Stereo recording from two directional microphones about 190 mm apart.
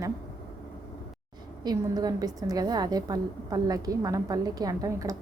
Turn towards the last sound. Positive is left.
turn(degrees=-20)  # may be behind; listen again after turning